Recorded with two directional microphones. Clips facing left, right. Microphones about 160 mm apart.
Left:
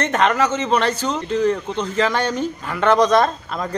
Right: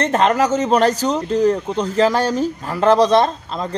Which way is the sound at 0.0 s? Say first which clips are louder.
Right 2 dB; 35° right (ahead or behind).